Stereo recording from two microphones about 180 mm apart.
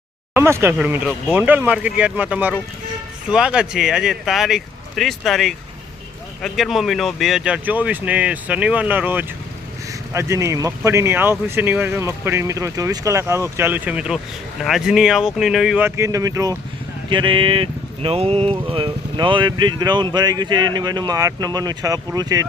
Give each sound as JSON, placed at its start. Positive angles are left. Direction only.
{"t": 0.3, "sound": "speech", "side_deg": -15}
{"t": 16.0, "sound": "speech", "side_deg": -15}